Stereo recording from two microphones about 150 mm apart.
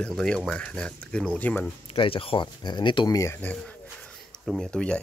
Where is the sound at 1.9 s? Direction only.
35° left (ahead or behind).